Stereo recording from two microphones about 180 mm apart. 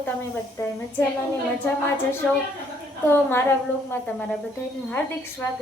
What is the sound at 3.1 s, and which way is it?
A woman's voice, 15° left (ahead or behind).